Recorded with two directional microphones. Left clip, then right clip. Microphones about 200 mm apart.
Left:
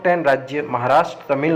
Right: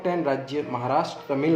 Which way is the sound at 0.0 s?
20° left (ahead or behind).